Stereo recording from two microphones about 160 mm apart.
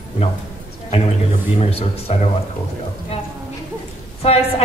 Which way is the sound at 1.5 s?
40° left (ahead or behind).